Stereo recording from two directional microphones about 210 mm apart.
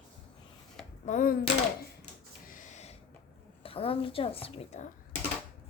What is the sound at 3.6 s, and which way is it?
A woman's voice, 25° left (ahead or behind).